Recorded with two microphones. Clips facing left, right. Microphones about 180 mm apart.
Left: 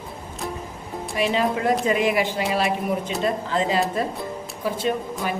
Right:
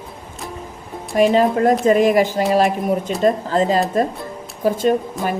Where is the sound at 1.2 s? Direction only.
45° right (ahead or behind).